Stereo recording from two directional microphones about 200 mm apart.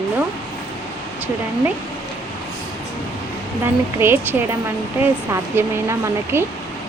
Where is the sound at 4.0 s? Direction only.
10° right (ahead or behind).